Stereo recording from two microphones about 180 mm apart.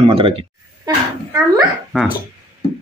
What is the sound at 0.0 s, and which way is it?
Speech, 30° right (ahead or behind).